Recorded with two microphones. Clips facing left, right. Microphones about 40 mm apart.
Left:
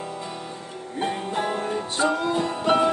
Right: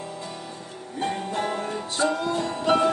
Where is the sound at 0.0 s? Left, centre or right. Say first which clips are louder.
Left 2 dB; left.